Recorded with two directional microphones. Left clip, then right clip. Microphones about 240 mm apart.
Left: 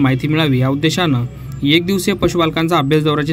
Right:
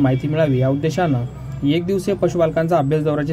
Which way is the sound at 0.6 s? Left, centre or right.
Left.